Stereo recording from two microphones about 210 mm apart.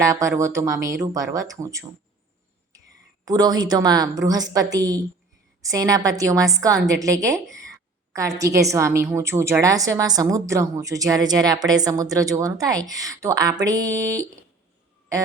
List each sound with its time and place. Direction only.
0.0 s a woman's voice: 15° right (ahead or behind)
3.2 s a woman's voice: 20° right (ahead or behind)
8.4 s a woman's voice: 15° right (ahead or behind)